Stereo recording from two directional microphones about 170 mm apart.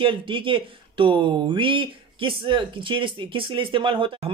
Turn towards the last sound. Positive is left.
turn(degrees=-30)  # may be behind; listen again after turning